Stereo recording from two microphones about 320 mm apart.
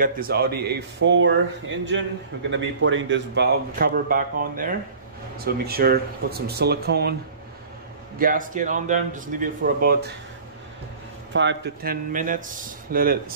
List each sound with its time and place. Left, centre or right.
0.0 s speech: right
2.5 s speech: right
8.2 s speech: right
11.3 s speech: right